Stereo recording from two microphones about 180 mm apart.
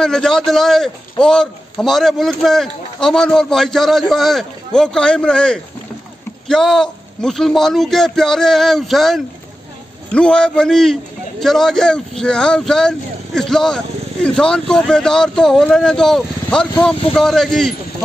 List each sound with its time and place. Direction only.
0.0 s a man's voice: 5° left (ahead or behind)